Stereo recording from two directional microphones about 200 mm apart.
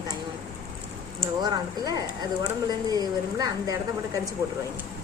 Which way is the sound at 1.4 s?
20° right (ahead or behind).